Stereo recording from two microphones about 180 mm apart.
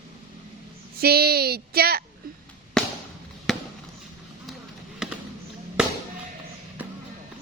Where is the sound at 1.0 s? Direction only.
60° right (ahead or behind).